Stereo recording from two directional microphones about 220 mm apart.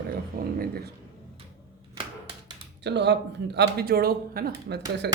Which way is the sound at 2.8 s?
50° right (ahead or behind).